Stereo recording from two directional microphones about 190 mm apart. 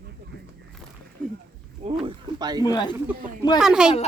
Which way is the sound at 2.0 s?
20° right (ahead or behind).